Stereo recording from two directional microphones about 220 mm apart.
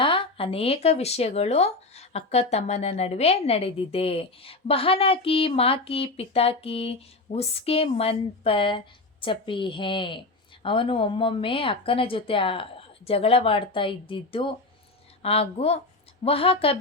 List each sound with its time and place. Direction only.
0.0 s speech: 25° left (ahead or behind)